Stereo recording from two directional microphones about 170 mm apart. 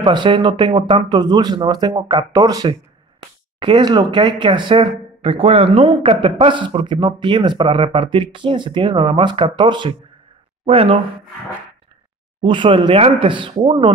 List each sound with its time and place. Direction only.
0.0 s speech: 25° right (ahead or behind)
12.4 s speech: 30° right (ahead or behind)